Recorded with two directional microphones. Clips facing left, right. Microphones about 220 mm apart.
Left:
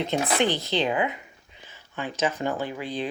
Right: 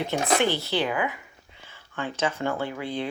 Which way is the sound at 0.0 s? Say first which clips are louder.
Even; 20° left (ahead or behind).